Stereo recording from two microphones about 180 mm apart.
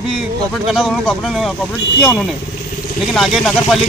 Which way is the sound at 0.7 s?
Centre (ahead or behind).